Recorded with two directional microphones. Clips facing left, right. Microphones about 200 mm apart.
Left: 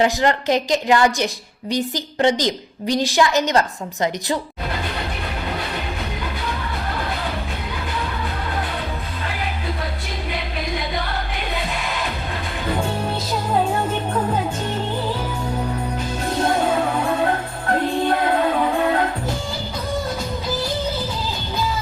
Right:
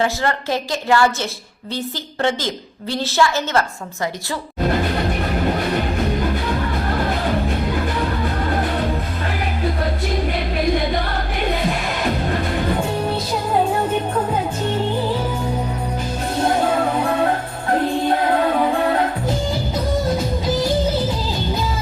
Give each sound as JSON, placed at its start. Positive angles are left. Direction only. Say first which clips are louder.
{"t": 0.0, "sound": "a woman's voice", "louder": "left 3 dB", "side_deg": 20}